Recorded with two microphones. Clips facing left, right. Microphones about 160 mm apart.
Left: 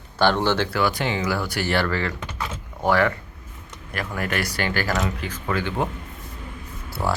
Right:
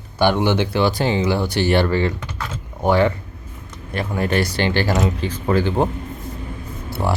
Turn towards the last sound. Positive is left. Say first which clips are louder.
# right 3 dB
turn(degrees=-20)  # may be behind; listen again after turning